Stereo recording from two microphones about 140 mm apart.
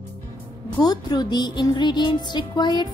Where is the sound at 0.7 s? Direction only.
30° left (ahead or behind).